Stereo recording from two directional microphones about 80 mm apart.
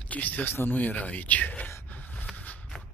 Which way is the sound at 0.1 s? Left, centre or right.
Left.